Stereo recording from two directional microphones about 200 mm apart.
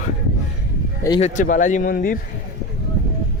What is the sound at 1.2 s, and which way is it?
Speech, 40° left (ahead or behind).